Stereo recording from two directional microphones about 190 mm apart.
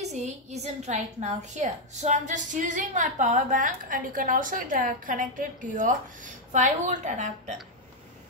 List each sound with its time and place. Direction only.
0.0 s a woman's voice: 35° right (ahead or behind)